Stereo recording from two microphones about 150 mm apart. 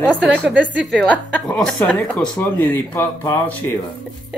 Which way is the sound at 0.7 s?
10° right (ahead or behind).